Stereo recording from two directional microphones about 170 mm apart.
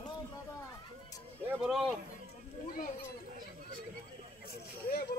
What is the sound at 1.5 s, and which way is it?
Speech, 5° right (ahead or behind).